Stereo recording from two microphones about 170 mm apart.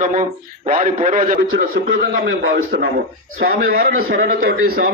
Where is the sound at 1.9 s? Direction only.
75° right (ahead or behind).